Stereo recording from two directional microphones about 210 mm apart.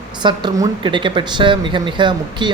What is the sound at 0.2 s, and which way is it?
Speech, 20° right (ahead or behind).